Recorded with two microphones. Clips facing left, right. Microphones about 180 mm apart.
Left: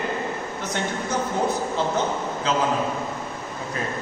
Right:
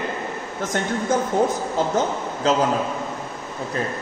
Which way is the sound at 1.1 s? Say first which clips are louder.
Right 6 dB; 50° right (ahead or behind).